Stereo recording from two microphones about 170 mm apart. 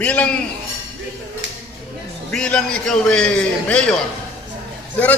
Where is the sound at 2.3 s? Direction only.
5° left (ahead or behind).